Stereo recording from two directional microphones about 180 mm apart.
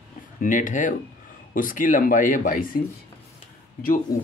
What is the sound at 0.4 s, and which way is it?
Speech, 45° left (ahead or behind).